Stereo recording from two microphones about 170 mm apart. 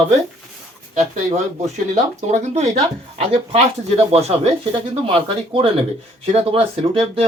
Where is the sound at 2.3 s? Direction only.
45° right (ahead or behind).